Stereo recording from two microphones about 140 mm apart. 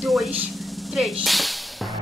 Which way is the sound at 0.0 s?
Centre (ahead or behind).